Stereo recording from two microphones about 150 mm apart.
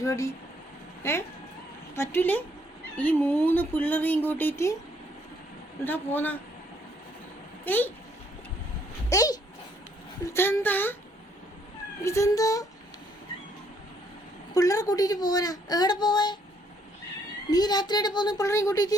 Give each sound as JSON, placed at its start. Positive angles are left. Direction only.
{"t": 0.0, "sound": "a woman's voice", "side_deg": 20}
{"t": 5.8, "sound": "speech", "side_deg": 15}
{"t": 7.6, "sound": "speech", "side_deg": 10}
{"t": 9.0, "sound": "a child's voice", "side_deg": 25}
{"t": 12.0, "sound": "a woman's voice", "side_deg": 20}
{"t": 14.5, "sound": "a woman's voice", "side_deg": 25}
{"t": 17.5, "sound": "a woman's voice", "side_deg": 25}